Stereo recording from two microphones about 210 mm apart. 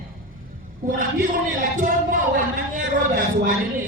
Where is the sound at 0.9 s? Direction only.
40° right (ahead or behind).